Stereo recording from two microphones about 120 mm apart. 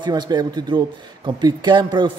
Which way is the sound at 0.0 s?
40° right (ahead or behind).